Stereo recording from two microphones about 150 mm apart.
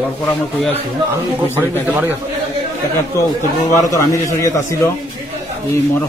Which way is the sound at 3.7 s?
20° left (ahead or behind).